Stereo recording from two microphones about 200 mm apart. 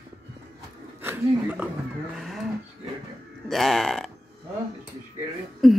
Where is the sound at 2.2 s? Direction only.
Centre (ahead or behind).